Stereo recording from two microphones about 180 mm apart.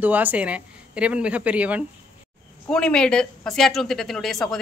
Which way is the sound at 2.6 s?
5° left (ahead or behind).